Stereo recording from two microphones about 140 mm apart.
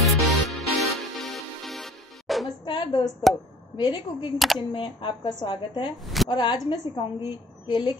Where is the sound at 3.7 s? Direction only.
30° left (ahead or behind).